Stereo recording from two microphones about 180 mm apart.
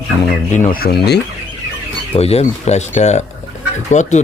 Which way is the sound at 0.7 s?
60° left (ahead or behind).